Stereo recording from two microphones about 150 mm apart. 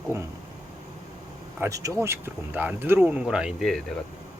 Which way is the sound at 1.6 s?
20° right (ahead or behind).